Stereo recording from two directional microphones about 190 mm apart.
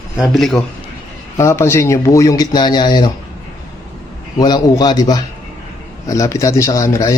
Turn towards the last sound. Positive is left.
turn(degrees=15)  # may be behind; listen again after turning